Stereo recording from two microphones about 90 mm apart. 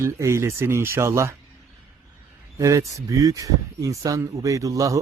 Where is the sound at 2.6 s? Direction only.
40° right (ahead or behind).